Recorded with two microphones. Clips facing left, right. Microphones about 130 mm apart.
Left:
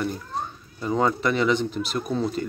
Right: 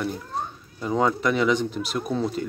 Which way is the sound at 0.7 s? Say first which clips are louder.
Even; centre (ahead or behind).